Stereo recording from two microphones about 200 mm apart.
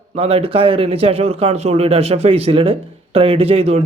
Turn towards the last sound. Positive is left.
turn(degrees=-30)  # may be behind; listen again after turning